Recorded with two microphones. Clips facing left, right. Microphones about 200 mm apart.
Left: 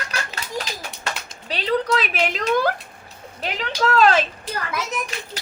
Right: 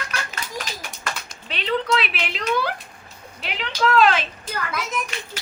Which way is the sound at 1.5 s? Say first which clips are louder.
Left 2 dB; 35° left (ahead or behind).